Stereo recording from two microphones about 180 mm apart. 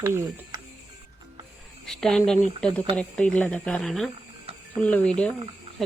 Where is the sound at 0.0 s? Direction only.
15° right (ahead or behind).